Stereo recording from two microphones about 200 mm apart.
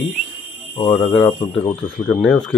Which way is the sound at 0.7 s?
20° left (ahead or behind).